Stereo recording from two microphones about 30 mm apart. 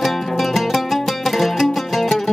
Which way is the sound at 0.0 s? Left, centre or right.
Centre.